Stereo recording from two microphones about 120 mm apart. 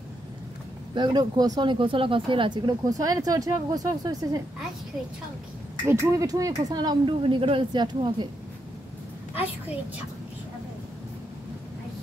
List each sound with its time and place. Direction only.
0.9 s speech: 35° right (ahead or behind)
5.9 s speech: 30° right (ahead or behind)
7.2 s speech: 50° right (ahead or behind)
9.3 s a woman's voice: 15° right (ahead or behind)